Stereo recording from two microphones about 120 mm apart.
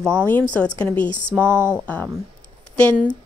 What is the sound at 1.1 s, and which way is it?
Speech, 90° left.